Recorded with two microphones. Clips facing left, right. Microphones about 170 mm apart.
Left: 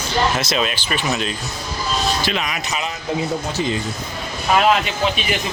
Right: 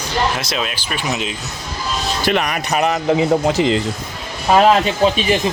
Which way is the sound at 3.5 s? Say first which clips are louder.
Right 7 dB; 90° right.